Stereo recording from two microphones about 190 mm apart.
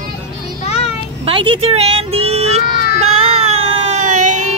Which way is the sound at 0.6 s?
35° left (ahead or behind).